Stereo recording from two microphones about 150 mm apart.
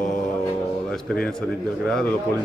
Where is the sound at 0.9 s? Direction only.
5° left (ahead or behind).